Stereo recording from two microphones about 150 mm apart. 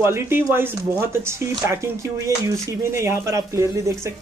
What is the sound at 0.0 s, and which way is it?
Speech, 15° right (ahead or behind).